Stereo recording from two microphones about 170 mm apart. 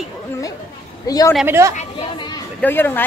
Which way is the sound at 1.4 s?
15° right (ahead or behind).